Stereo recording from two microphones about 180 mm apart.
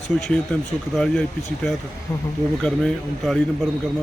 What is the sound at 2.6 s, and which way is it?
Speech, 5° left (ahead or behind).